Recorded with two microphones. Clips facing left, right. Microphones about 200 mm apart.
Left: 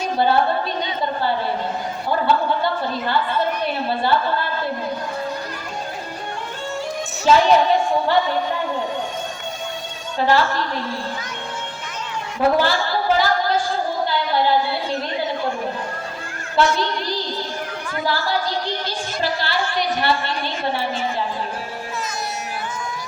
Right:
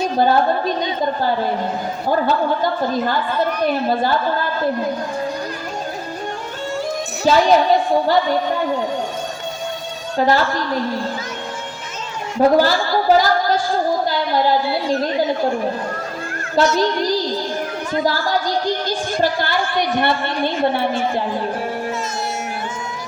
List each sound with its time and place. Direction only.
0.0 s a woman's voice: 45° right (ahead or behind)
2.0 s a woman's voice: 45° right (ahead or behind)
7.3 s a woman's voice: 35° right (ahead or behind)
10.2 s a woman's voice: 40° right (ahead or behind)
12.4 s a woman's voice: 40° right (ahead or behind)
14.8 s a woman's voice: 40° right (ahead or behind)
16.6 s a woman's voice: 40° right (ahead or behind)